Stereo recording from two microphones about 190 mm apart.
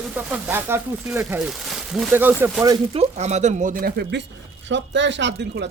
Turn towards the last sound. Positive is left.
turn(degrees=-65)  # may be behind; listen again after turning